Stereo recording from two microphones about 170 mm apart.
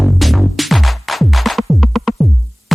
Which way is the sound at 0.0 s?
Centre (ahead or behind).